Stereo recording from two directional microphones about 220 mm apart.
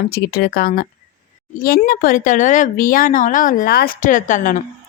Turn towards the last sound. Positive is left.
turn(degrees=35)  # may be behind; listen again after turning